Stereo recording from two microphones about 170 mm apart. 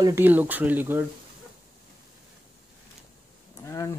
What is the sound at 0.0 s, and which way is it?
Speech, 15° right (ahead or behind).